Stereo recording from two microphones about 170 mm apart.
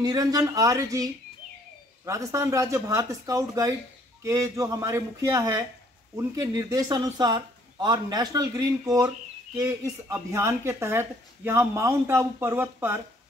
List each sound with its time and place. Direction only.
0.0 s speech: 20° right (ahead or behind)
2.0 s speech: 15° right (ahead or behind)